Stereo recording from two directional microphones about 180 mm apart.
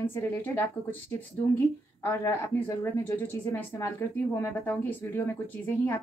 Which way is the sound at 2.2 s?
15° left (ahead or behind).